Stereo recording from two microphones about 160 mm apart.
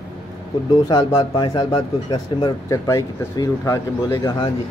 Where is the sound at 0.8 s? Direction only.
25° left (ahead or behind).